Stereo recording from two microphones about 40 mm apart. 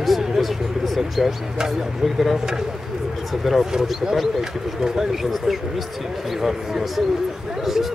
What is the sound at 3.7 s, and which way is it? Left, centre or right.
Speech, centre.